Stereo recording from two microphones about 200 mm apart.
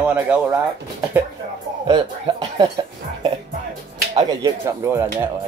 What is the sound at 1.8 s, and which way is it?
Speech, 20° right (ahead or behind).